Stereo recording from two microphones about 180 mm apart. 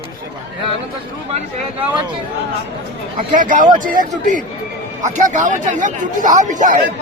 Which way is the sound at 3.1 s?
45° right (ahead or behind).